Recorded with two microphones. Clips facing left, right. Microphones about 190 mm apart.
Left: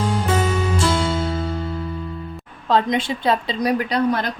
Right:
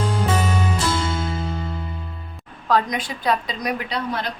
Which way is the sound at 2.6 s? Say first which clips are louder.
Left 3 dB; 25° left (ahead or behind).